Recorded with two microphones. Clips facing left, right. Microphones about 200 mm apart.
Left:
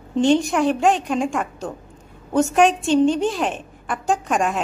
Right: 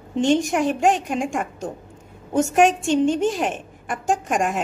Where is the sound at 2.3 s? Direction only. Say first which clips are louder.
Left 1 dB; 45° right (ahead or behind).